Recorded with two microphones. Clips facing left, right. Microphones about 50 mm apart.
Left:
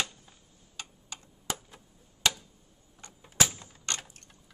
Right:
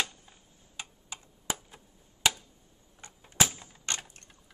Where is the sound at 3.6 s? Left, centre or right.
Centre.